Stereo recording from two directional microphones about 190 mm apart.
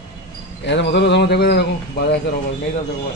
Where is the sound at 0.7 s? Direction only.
65° left (ahead or behind).